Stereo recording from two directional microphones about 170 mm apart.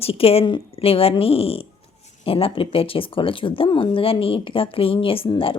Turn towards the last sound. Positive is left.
turn(degrees=30)  # may be behind; listen again after turning